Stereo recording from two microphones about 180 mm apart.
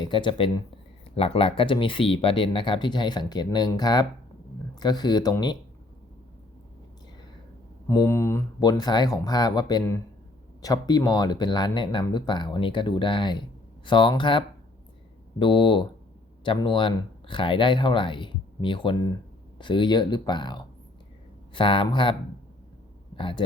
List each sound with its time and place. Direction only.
0.0 s speech: 25° left (ahead or behind)
7.9 s speech: 15° left (ahead or behind)
23.1 s speech: 30° left (ahead or behind)